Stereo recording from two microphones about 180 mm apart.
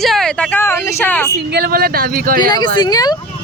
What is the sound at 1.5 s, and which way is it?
Speech, 60° right (ahead or behind).